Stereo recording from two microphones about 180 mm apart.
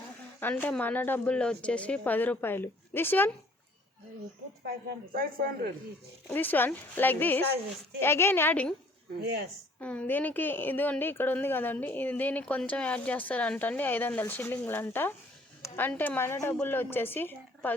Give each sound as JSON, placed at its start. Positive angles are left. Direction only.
{"t": 0.3, "sound": "a woman's voice", "side_deg": 10}
{"t": 4.6, "sound": "a woman's voice", "side_deg": -55}
{"t": 6.2, "sound": "a woman's voice", "side_deg": 10}
{"t": 9.2, "sound": "speech", "side_deg": -65}
{"t": 9.8, "sound": "a woman's voice", "side_deg": 5}